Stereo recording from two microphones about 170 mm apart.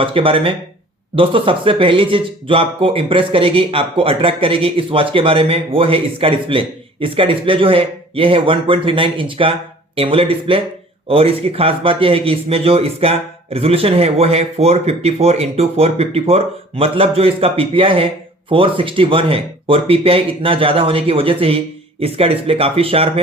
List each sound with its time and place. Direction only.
0.0 s speech: 30° right (ahead or behind)